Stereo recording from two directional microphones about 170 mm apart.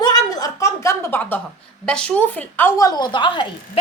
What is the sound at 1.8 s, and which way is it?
A woman's voice, 5° left (ahead or behind).